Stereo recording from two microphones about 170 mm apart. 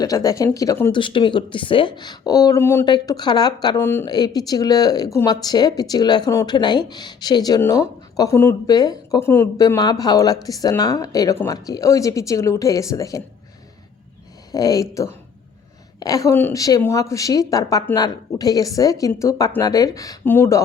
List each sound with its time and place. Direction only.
0.0 s speech: 20° left (ahead or behind)
0.9 s speech: 30° left (ahead or behind)
14.5 s speech: 20° left (ahead or behind)